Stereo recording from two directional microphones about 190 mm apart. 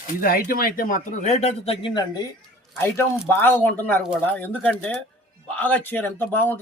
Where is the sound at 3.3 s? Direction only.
10° left (ahead or behind).